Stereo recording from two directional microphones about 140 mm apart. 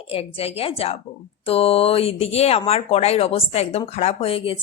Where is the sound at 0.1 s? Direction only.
45° left (ahead or behind).